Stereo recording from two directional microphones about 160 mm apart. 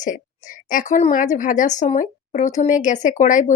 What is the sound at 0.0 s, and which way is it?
A woman's voice, 55° left (ahead or behind).